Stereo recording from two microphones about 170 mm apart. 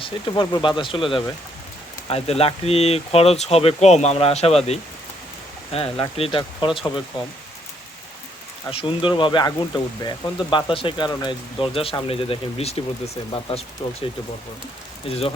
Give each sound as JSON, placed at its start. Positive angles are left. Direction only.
{"t": 0.0, "sound": "speech", "side_deg": 30}
{"t": 8.7, "sound": "speech", "side_deg": 30}
{"t": 15.1, "sound": "speech", "side_deg": 35}